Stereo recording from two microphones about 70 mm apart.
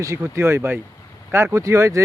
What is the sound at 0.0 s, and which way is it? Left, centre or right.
Speech, right.